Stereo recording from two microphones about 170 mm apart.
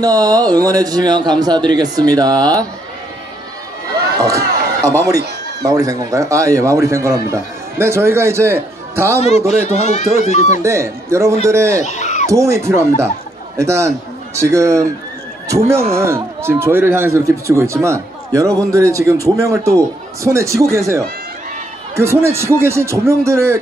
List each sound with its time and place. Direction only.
0.0 s a man's voice: 20° right (ahead or behind)
4.2 s a man's voice: 20° right (ahead or behind)
9.5 s speech: 40° left (ahead or behind)
10.6 s a man's voice: 15° right (ahead or behind)
11.8 s speech: 45° left (ahead or behind)
12.3 s a man's voice: 15° right (ahead or behind)
15.9 s a man's voice: 15° right (ahead or behind)